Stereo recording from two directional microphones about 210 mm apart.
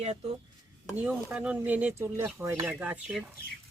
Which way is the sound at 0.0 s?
30° right (ahead or behind).